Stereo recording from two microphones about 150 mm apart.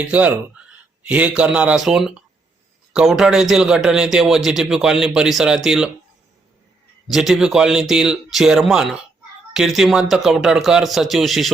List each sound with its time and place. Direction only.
0.0 s a man's voice: 10° right (ahead or behind)
7.1 s a man's voice: centre (ahead or behind)